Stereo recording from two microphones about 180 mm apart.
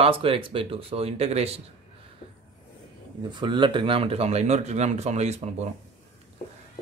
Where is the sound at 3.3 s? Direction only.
25° right (ahead or behind).